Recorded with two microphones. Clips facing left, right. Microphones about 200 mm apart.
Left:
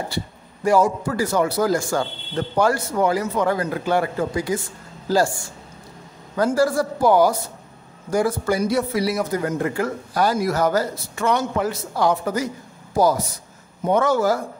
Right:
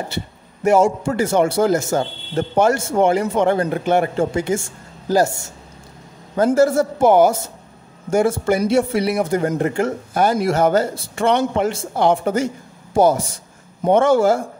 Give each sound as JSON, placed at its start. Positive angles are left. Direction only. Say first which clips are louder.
{"t": 0.7, "sound": "speech", "louder": "right 3 dB", "side_deg": -25}